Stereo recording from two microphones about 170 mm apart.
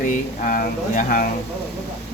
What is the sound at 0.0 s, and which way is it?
Speech, 55° left (ahead or behind).